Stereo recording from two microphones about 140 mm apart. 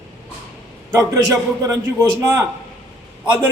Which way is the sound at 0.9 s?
20° right (ahead or behind).